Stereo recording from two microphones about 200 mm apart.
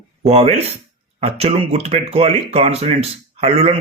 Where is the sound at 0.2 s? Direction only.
35° right (ahead or behind).